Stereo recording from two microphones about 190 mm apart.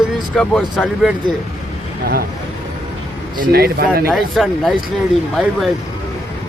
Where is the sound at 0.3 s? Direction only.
5° left (ahead or behind).